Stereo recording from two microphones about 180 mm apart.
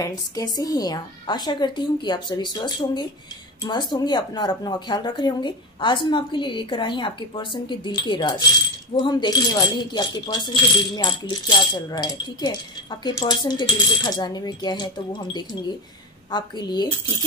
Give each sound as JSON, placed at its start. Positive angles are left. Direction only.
{"t": 0.0, "sound": "speech", "side_deg": 20}
{"t": 16.3, "sound": "speech", "side_deg": 25}